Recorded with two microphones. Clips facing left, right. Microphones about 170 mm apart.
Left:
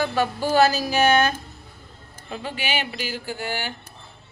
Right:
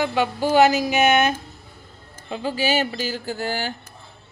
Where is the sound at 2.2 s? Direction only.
30° right (ahead or behind).